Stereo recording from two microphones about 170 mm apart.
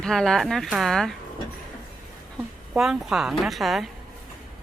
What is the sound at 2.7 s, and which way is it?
Speech, 5° right (ahead or behind).